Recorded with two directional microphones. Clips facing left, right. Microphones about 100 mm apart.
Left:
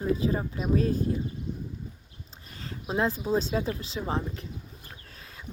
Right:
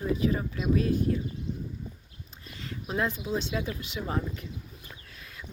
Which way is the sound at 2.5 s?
30° left (ahead or behind).